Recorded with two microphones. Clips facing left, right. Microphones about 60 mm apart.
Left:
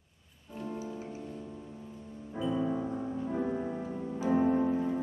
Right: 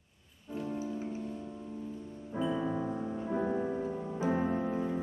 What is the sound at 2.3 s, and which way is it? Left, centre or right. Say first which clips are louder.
Music: left 1 dB; right.